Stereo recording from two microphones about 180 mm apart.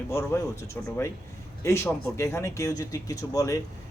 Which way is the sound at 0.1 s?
15° left (ahead or behind).